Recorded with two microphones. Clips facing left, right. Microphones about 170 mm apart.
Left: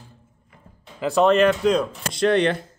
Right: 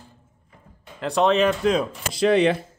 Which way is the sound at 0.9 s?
5° left (ahead or behind).